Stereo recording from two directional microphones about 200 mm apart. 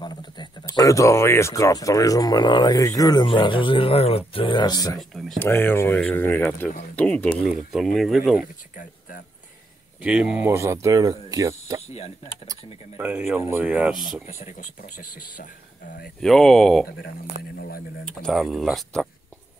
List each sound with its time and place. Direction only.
0.0 s speech: 20° left (ahead or behind)
4.9 s speech: centre (ahead or behind)
10.0 s speech: 5° right (ahead or behind)
12.9 s speech: 10° right (ahead or behind)
14.2 s speech: 40° left (ahead or behind)
16.2 s speech: centre (ahead or behind)
17.6 s speech: 50° left (ahead or behind)
18.0 s speech: centre (ahead or behind)